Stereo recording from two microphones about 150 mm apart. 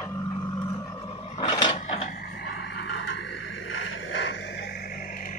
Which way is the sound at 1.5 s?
30° left (ahead or behind).